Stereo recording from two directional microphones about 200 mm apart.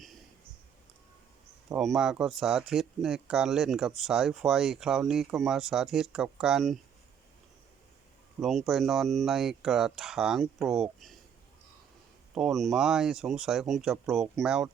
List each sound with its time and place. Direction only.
1.7 s speech: centre (ahead or behind)
8.4 s speech: centre (ahead or behind)
12.3 s speech: centre (ahead or behind)